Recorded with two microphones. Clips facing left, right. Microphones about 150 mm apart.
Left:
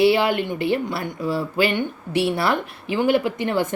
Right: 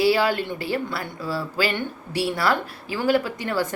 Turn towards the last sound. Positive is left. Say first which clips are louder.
# left 4 dB
turn(degrees=20)  # may be behind; listen again after turning